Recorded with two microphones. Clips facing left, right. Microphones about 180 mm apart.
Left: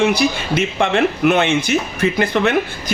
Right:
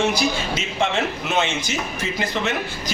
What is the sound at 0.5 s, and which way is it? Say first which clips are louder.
Speech: left 6 dB; 60° left (ahead or behind).